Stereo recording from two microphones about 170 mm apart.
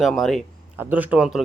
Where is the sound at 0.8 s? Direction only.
10° right (ahead or behind).